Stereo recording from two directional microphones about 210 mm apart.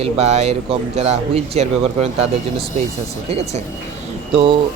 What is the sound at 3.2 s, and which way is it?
Speech, 30° right (ahead or behind).